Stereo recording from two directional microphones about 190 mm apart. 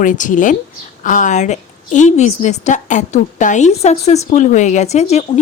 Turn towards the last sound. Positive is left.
turn(degrees=35)  # may be behind; listen again after turning